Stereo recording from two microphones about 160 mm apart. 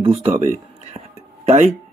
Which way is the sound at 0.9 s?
45° right (ahead or behind).